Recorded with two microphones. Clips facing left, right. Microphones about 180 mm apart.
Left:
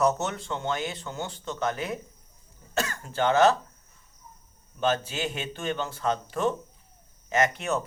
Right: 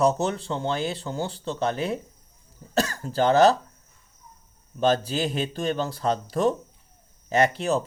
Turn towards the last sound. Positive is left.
turn(degrees=-30)  # may be behind; listen again after turning